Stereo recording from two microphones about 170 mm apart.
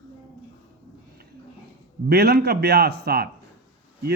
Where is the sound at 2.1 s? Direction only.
70° right (ahead or behind).